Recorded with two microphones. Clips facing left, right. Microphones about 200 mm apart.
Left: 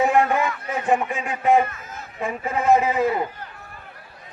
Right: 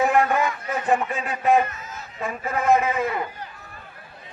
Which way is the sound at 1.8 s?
55° left (ahead or behind).